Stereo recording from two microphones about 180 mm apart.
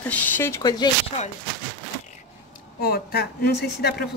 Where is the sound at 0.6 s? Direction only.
25° left (ahead or behind).